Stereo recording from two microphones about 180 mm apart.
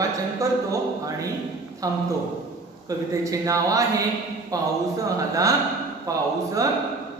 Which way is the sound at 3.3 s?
20° right (ahead or behind).